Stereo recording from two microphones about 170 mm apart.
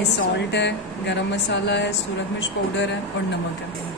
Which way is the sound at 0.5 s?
90° left.